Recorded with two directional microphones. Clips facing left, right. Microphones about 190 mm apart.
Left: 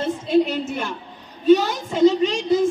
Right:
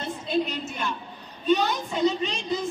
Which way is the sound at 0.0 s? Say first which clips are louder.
Left 8 dB; 90° left.